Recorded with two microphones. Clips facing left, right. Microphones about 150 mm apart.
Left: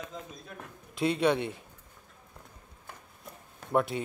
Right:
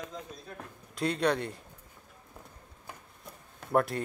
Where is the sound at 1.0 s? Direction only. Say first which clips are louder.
Left 2 dB; 5° left (ahead or behind).